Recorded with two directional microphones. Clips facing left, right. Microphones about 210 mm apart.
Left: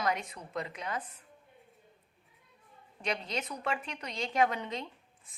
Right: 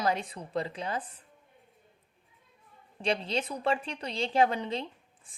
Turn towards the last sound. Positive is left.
turn(degrees=-30)  # may be behind; listen again after turning